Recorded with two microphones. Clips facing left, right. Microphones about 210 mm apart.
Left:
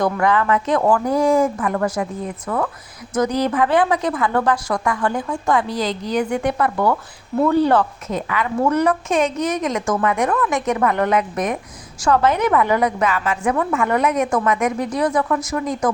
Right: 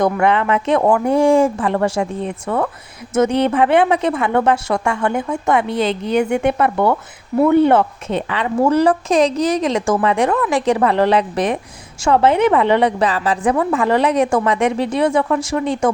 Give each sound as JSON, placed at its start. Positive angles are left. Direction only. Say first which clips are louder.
{"t": 0.0, "sound": "a woman's voice", "louder": "right 2 dB", "side_deg": -25}